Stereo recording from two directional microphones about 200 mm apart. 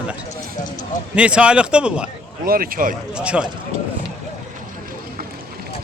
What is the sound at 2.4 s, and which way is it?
Speech, 45° right (ahead or behind).